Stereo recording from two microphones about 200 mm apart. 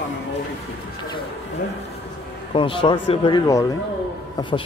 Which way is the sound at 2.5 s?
25° left (ahead or behind).